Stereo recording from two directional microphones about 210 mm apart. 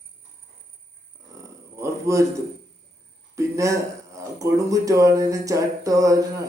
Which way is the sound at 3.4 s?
15° right (ahead or behind).